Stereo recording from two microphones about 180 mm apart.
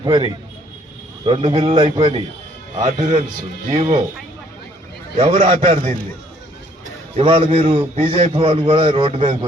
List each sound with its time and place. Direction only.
0.0 s a man's voice: 25° right (ahead or behind)
3.7 s speech: 40° right (ahead or behind)
5.1 s a man's voice: 35° right (ahead or behind)
7.2 s a man's voice: 30° right (ahead or behind)